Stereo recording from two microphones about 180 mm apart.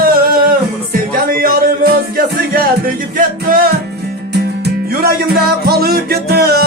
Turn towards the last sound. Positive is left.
turn(degrees=-60)  # may be behind; listen again after turning